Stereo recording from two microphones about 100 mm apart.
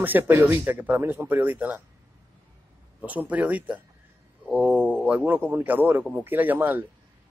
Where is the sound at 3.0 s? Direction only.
15° right (ahead or behind).